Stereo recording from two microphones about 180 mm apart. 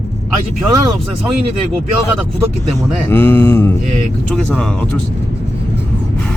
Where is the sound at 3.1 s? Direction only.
10° left (ahead or behind).